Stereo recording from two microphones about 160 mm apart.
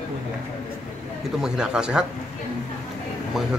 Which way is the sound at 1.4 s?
5° right (ahead or behind).